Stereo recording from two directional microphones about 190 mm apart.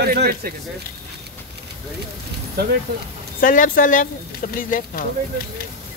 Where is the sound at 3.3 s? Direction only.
45° left (ahead or behind).